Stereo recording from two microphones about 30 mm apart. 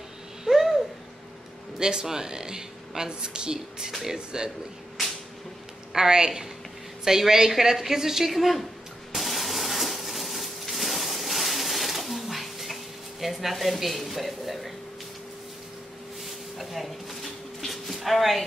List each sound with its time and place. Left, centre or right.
0.5 s owl: centre
1.8 s a woman's voice: right
5.9 s a woman's voice: right; by 8.6 s centre
9.1 s a sound: centre
13.2 s speech: centre
16.5 s a sound: centre